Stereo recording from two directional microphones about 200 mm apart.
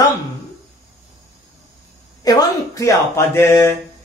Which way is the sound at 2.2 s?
20° left (ahead or behind).